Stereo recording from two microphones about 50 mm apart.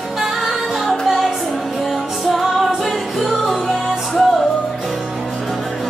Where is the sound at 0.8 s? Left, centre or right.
Centre.